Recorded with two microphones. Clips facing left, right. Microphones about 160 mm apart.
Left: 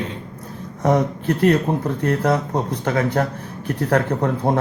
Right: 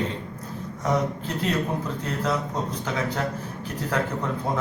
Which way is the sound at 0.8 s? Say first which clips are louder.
Left 7 dB; 60° left (ahead or behind).